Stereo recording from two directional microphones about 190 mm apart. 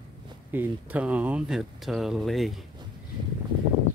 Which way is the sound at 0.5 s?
10° right (ahead or behind).